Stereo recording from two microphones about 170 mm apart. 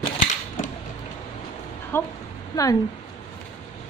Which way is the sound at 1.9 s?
10° left (ahead or behind).